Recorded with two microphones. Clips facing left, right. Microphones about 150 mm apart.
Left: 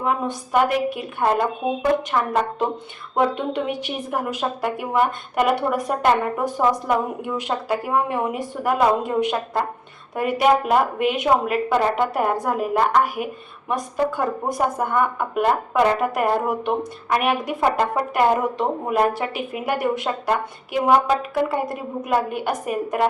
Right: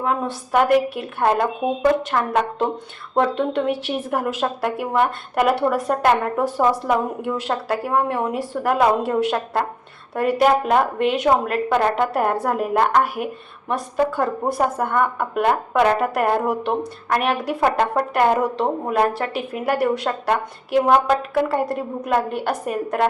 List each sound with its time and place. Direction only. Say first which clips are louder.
0.5 s a woman's voice: right 3 dB; centre (ahead or behind)